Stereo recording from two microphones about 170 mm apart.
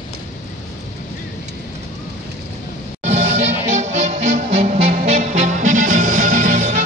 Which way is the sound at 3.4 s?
40° right (ahead or behind).